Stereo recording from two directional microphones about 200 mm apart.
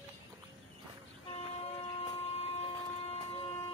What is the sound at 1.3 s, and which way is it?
Vehicle, 30° left (ahead or behind).